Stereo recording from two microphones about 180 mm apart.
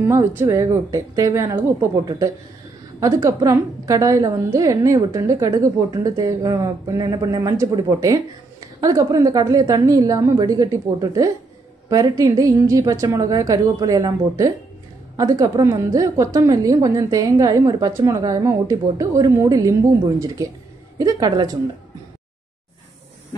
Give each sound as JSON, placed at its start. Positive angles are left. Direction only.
{"t": 0.0, "sound": "a woman's voice", "side_deg": -15}